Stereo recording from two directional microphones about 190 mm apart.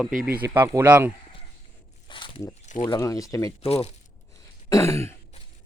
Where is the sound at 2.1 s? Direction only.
25° left (ahead or behind).